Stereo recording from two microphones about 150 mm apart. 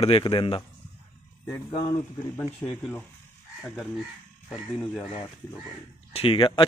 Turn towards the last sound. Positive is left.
turn(degrees=35)  # may be behind; listen again after turning